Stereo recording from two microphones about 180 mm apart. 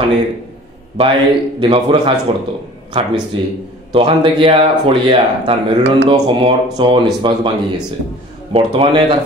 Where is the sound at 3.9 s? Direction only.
30° right (ahead or behind).